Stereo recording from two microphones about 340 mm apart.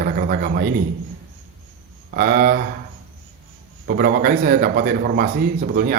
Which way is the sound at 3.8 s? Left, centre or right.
Right.